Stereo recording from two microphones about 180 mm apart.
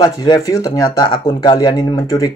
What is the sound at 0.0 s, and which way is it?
Speech, 20° left (ahead or behind).